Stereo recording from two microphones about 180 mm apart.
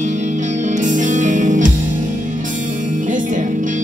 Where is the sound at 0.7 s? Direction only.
45° right (ahead or behind).